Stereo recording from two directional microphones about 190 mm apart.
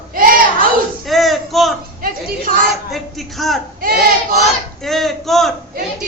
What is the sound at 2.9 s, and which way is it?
Speech, centre (ahead or behind).